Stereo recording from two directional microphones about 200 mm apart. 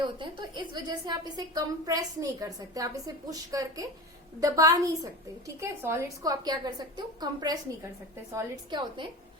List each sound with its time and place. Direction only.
0.0 s a woman's voice: 25° right (ahead or behind)